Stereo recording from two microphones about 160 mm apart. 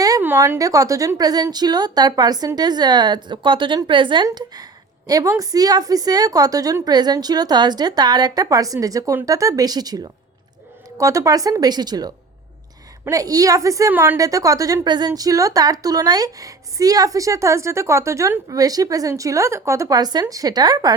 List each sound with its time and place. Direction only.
0.0 s a woman's voice: 15° right (ahead or behind)